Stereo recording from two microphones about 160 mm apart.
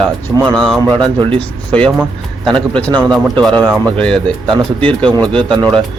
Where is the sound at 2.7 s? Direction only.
10° left (ahead or behind).